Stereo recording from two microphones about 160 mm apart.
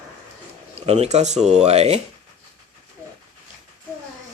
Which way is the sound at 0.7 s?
40° right (ahead or behind).